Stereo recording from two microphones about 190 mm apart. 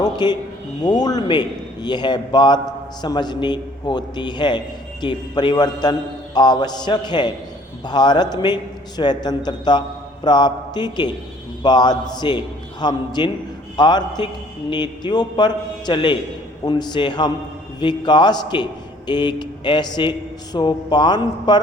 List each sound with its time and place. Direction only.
0.0 s a man's voice: 20° left (ahead or behind)